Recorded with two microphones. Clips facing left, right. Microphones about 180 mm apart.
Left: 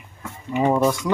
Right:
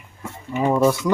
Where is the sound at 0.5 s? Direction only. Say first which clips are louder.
Right 1 dB; 10° left (ahead or behind).